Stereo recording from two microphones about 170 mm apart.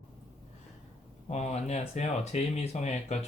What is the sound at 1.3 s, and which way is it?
Speech, 40° left (ahead or behind).